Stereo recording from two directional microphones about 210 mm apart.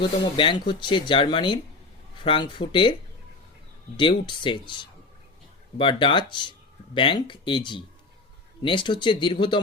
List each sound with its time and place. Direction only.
0.0 s speech: 25° left (ahead or behind)
3.9 s speech: 25° left (ahead or behind)